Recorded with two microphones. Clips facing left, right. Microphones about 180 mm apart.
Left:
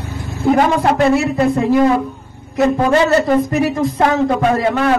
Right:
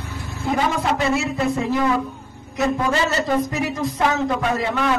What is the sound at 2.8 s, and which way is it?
Speech, 60° left (ahead or behind).